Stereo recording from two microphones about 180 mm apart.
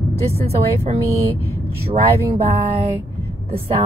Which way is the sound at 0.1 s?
35° right (ahead or behind).